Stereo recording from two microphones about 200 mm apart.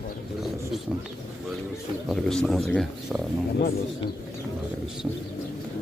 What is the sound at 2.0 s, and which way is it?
Speech, centre (ahead or behind).